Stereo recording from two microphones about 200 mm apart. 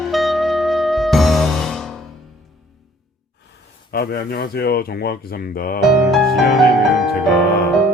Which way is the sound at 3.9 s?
50° left (ahead or behind).